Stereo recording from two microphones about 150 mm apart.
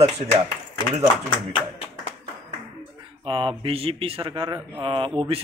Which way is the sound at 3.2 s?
35° right (ahead or behind).